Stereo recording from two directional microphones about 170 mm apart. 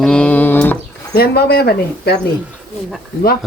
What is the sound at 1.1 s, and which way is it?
Speech, 70° left (ahead or behind).